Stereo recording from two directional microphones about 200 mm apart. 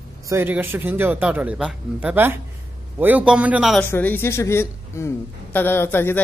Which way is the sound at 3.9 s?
10° left (ahead or behind).